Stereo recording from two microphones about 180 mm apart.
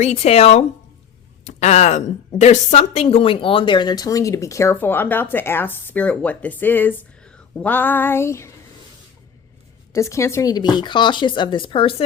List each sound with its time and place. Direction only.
0.0 s a woman's voice: 40° left (ahead or behind); by 8.5 s 15° left (ahead or behind)
9.9 s speech: 15° left (ahead or behind)